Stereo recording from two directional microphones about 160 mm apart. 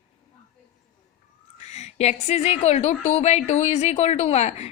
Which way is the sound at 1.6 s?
45° left (ahead or behind).